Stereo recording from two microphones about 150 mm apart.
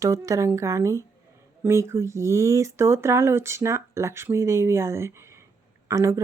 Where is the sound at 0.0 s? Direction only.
20° right (ahead or behind).